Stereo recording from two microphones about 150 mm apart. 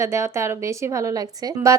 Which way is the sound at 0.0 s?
20° right (ahead or behind).